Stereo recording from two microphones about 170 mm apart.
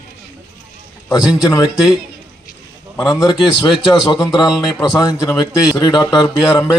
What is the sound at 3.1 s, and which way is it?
Speech, 20° left (ahead or behind).